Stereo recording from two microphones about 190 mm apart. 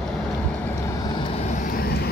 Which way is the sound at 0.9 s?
20° left (ahead or behind).